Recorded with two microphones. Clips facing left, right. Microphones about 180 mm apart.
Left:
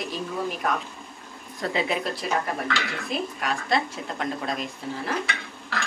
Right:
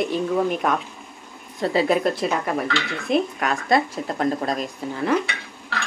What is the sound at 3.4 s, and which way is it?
Speech, 45° right (ahead or behind).